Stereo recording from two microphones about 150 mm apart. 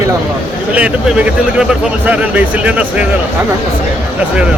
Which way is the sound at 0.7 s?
10° right (ahead or behind).